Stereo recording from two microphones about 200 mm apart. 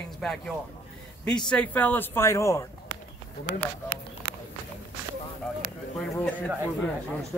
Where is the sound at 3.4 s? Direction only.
55° right (ahead or behind).